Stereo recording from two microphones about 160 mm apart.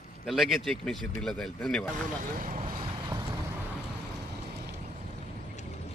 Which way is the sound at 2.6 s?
30° right (ahead or behind).